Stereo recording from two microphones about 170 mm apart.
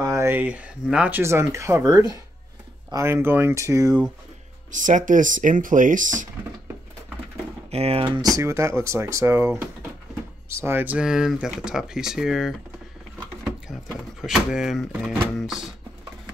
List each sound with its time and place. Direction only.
0.0 s speech: 15° right (ahead or behind)
4.6 s speech: 50° right (ahead or behind)
7.7 s speech: 35° right (ahead or behind); by 12.5 s centre (ahead or behind)
14.2 s speech: centre (ahead or behind)